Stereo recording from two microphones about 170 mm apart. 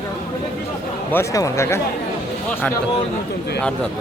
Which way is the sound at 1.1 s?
15° left (ahead or behind).